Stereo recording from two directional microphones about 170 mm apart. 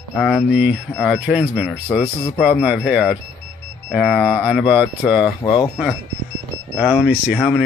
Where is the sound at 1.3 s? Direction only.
5° right (ahead or behind).